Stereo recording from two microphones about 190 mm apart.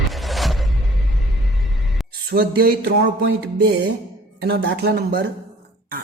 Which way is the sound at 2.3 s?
55° right (ahead or behind).